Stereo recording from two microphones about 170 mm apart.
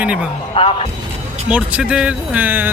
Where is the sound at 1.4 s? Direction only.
5° right (ahead or behind).